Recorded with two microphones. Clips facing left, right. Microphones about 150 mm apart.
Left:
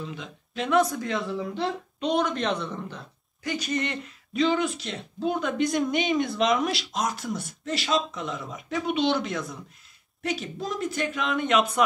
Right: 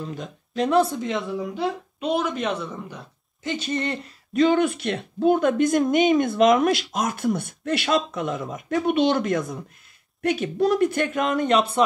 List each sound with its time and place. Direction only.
0.0 s speech: 40° right (ahead or behind); by 1.2 s 20° right (ahead or behind)
1.4 s speech: 5° right (ahead or behind)
3.4 s speech: 25° right (ahead or behind)
4.3 s a woman's voice: 50° right (ahead or behind)
10.4 s speech: 65° right (ahead or behind)
11.1 s speech: 45° right (ahead or behind)